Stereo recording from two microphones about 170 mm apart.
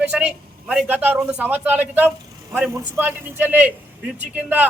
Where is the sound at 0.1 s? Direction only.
5° right (ahead or behind).